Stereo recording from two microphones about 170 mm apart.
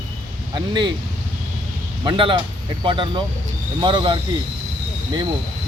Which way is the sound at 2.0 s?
30° right (ahead or behind).